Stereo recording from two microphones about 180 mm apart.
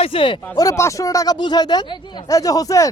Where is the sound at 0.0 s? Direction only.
30° left (ahead or behind).